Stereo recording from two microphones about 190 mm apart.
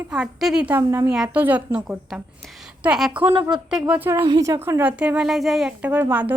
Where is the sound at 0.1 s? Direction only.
5° right (ahead or behind).